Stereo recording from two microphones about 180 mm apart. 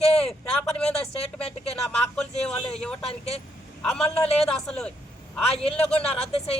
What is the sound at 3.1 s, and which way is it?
Speech, 35° left (ahead or behind).